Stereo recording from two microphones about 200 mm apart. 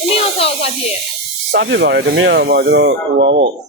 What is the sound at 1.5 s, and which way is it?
Speech, 60° right (ahead or behind).